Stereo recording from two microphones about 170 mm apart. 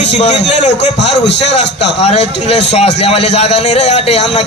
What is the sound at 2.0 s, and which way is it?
A man's voice, 40° left (ahead or behind).